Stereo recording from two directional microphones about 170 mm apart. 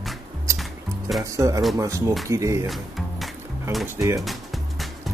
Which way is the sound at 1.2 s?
20° right (ahead or behind).